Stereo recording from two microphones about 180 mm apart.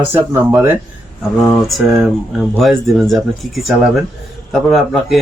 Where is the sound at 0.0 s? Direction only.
15° right (ahead or behind).